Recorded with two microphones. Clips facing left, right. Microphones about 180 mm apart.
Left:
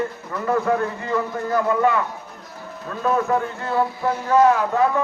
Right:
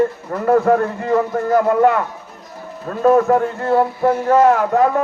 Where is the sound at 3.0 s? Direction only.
45° right (ahead or behind).